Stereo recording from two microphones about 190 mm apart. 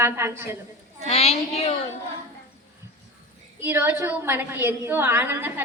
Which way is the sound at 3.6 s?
15° right (ahead or behind).